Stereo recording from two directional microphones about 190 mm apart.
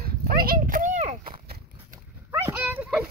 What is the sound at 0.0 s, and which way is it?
Horse, 50° right (ahead or behind).